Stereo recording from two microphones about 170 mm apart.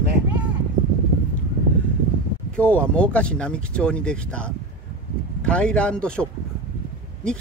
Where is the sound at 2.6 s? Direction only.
5° left (ahead or behind).